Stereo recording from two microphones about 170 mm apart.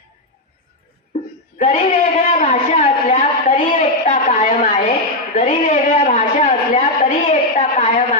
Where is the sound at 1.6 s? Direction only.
45° left (ahead or behind).